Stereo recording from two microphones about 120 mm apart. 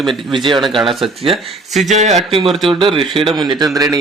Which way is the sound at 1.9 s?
75° right (ahead or behind).